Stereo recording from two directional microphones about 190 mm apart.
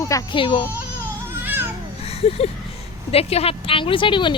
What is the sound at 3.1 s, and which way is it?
Speech, 30° left (ahead or behind).